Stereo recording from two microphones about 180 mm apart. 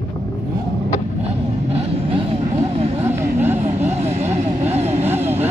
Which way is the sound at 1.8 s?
35° right (ahead or behind).